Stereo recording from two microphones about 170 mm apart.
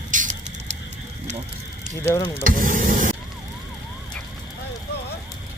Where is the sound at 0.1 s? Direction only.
50° right (ahead or behind).